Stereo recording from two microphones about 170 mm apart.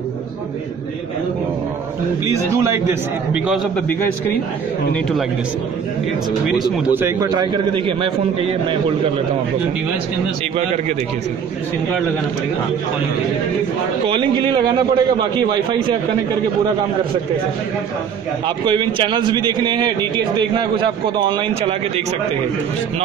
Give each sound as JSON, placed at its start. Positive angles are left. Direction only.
{"t": 2.2, "sound": "a man's voice", "side_deg": -15}
{"t": 3.4, "sound": "speech", "side_deg": 0}
{"t": 6.4, "sound": "speech", "side_deg": 0}
{"t": 7.0, "sound": "a man's voice", "side_deg": -20}
{"t": 14.0, "sound": "a man's voice", "side_deg": -30}
{"t": 18.7, "sound": "a man's voice", "side_deg": -30}